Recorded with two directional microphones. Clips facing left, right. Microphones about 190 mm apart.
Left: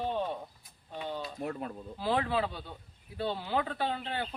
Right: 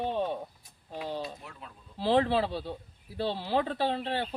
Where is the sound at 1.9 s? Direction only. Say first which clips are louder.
Right 5 dB; 30° right (ahead or behind).